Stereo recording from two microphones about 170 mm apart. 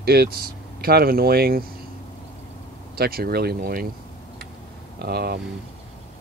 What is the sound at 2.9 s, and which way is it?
Speech, 65° right (ahead or behind).